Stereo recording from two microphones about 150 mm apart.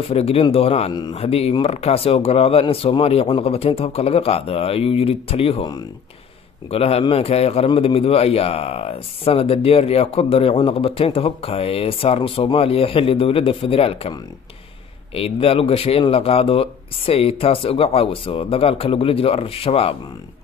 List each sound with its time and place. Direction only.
0.1 s a man's voice: 45° left (ahead or behind)
6.7 s a man's voice: 40° left (ahead or behind)
15.1 s a man's voice: 40° left (ahead or behind)